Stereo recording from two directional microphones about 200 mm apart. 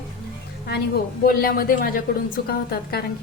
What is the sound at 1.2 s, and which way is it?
A woman's voice, 45° left (ahead or behind).